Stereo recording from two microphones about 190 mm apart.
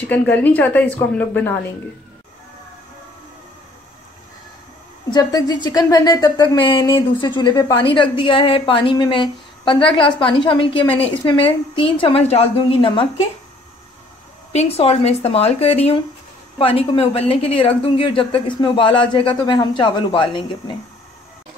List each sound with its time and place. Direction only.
0.0 s speech: 10° left (ahead or behind)
5.1 s speech: 20° left (ahead or behind)
14.5 s speech: 35° left (ahead or behind)